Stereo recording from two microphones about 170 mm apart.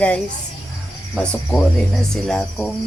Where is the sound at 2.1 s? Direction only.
5° left (ahead or behind).